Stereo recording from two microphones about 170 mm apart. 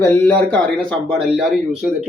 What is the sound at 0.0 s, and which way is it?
Speech, 10° left (ahead or behind).